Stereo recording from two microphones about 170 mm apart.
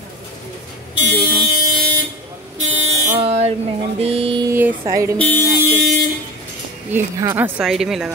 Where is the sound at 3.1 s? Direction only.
35° right (ahead or behind).